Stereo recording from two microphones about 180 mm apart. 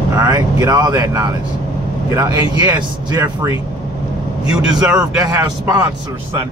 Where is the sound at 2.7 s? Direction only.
25° right (ahead or behind).